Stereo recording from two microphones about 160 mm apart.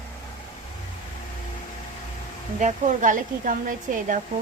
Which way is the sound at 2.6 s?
50° right (ahead or behind).